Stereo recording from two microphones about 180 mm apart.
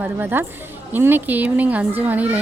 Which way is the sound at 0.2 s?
10° right (ahead or behind).